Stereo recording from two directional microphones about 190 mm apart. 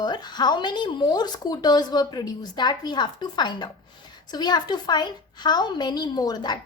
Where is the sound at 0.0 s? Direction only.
20° left (ahead or behind).